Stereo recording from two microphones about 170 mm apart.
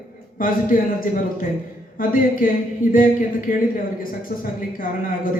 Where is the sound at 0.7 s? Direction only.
55° left (ahead or behind).